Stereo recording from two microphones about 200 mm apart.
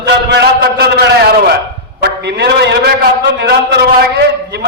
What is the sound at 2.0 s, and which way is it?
A man's voice, 55° right (ahead or behind).